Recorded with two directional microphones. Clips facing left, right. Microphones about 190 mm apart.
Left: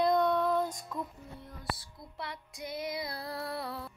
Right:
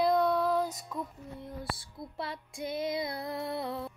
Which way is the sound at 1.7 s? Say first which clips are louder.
Right 6 dB; 25° right (ahead or behind).